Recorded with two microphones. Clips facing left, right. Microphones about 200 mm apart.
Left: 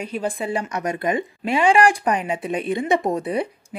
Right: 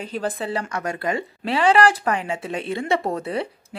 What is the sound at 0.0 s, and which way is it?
A woman's voice, 10° left (ahead or behind).